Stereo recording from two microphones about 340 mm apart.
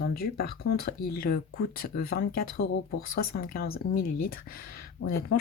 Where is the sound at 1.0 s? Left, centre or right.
Left.